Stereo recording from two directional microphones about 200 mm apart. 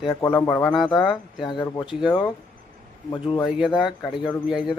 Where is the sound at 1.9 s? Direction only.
5° right (ahead or behind).